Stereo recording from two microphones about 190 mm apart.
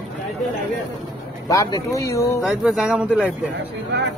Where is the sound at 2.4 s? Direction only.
5° right (ahead or behind).